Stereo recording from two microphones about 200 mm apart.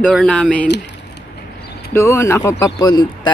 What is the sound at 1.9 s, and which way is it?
Speech, 15° left (ahead or behind).